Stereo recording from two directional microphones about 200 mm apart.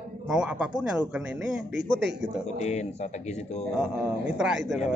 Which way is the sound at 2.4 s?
35° left (ahead or behind).